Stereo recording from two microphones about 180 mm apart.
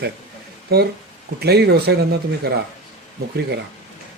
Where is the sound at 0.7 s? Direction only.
60° right (ahead or behind).